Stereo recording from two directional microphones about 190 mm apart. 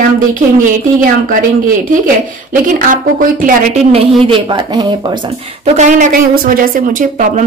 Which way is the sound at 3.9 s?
30° right (ahead or behind).